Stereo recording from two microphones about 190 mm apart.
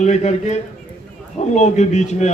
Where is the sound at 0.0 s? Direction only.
40° left (ahead or behind).